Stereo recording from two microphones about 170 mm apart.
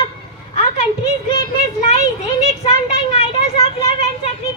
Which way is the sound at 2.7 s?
35° left (ahead or behind).